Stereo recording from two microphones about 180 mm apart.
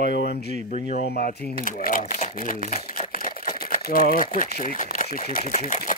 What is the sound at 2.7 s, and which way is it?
Crumpling, 50° left (ahead or behind).